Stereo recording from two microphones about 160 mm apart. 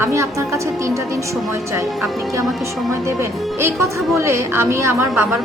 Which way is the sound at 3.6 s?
15° right (ahead or behind).